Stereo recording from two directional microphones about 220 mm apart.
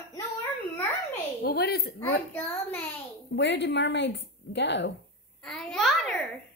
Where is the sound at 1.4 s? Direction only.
45° left (ahead or behind).